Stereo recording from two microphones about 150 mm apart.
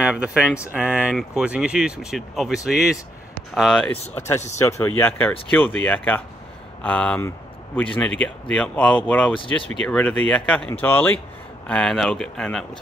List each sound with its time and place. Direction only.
0.0 s speech: 5° right (ahead or behind)
4.6 s speech: 20° left (ahead or behind)
9.3 s speech: 35° left (ahead or behind)
9.8 s speech: 10° left (ahead or behind)